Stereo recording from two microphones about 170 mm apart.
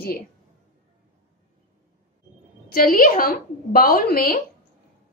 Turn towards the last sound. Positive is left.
turn(degrees=60)  # may be behind; listen again after turning